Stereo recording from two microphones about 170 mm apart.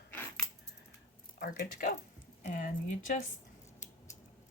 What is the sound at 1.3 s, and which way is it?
Speech, 55° left (ahead or behind).